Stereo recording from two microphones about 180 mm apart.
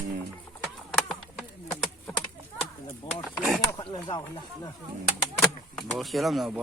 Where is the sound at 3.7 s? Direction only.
25° left (ahead or behind).